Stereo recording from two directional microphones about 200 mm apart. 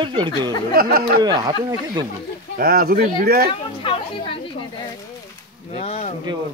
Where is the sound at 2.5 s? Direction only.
45° right (ahead or behind).